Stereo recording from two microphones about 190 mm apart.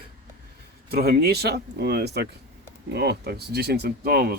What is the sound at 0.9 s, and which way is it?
Speech, 55° right (ahead or behind).